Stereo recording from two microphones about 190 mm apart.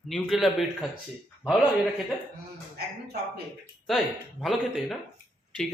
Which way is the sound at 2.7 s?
60° right (ahead or behind).